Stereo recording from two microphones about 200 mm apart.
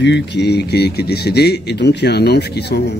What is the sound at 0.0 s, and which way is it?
Speech, 60° left (ahead or behind).